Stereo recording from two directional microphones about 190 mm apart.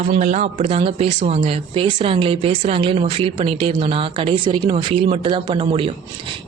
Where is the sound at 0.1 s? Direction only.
35° right (ahead or behind).